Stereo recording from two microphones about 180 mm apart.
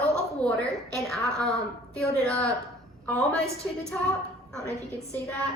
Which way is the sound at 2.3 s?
15° right (ahead or behind).